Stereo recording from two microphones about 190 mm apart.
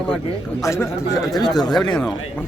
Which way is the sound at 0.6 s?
15° left (ahead or behind).